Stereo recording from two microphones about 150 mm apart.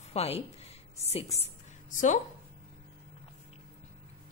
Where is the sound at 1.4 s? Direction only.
60° left (ahead or behind).